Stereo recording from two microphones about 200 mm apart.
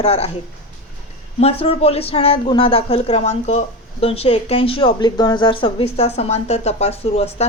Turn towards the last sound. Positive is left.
turn(degrees=30)  # may be behind; listen again after turning